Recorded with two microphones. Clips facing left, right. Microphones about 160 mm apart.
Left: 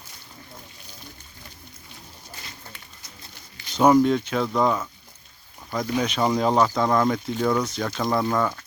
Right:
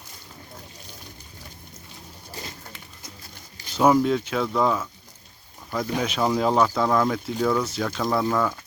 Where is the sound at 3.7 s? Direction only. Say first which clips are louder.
Left 2 dB; 5° right (ahead or behind).